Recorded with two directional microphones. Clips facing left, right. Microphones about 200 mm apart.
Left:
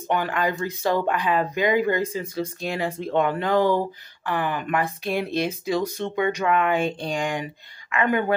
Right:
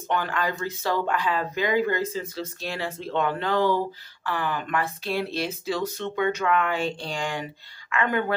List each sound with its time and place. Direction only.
0.1 s a woman's voice: 15° left (ahead or behind)